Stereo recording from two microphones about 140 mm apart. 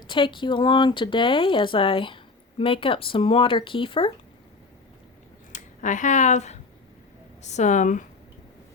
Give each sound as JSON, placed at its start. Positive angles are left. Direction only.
{"t": 0.1, "sound": "speech", "side_deg": 35}
{"t": 5.5, "sound": "a woman's voice", "side_deg": 60}